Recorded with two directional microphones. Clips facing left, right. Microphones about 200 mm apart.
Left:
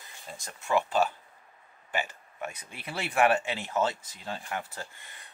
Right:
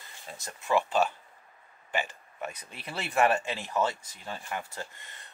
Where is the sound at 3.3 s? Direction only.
20° left (ahead or behind).